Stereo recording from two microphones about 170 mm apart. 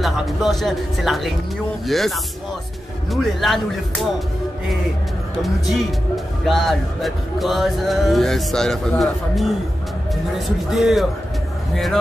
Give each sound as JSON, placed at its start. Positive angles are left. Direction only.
{"t": 0.0, "sound": "speech", "side_deg": 0}
{"t": 5.4, "sound": "speech", "side_deg": 0}
{"t": 10.7, "sound": "speech", "side_deg": 0}